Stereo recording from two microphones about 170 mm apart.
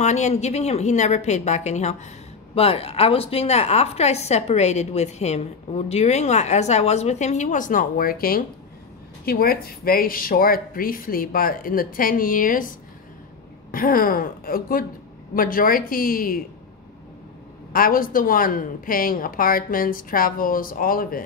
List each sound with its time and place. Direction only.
0.0 s a woman's voice: 40° left (ahead or behind); by 16.4 s 60° left (ahead or behind)
17.7 s speech: 55° left (ahead or behind)